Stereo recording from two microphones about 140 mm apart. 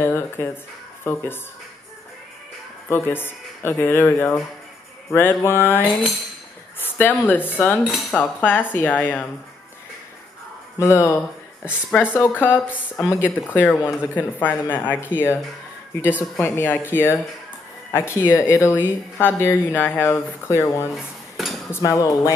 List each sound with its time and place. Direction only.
0.0 s a woman's voice: 15° left (ahead or behind)
2.9 s a woman's voice: 15° left (ahead or behind)
7.8 s cutlery: centre (ahead or behind)
8.2 s a woman's voice: 10° left (ahead or behind)
10.8 s cutlery: 20° left (ahead or behind)
11.9 s a woman's voice: 15° left (ahead or behind)
16.3 s a woman's voice: 15° left (ahead or behind)
20.9 s dishes: centre (ahead or behind)
21.6 s cutlery: 20° left (ahead or behind)